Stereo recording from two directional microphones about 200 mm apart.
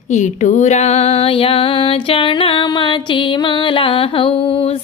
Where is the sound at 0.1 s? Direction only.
35° left (ahead or behind).